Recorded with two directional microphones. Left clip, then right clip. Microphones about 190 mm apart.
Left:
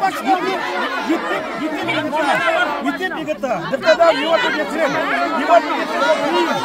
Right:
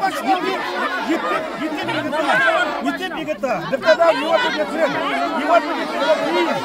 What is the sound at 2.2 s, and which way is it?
Speech, 5° left (ahead or behind).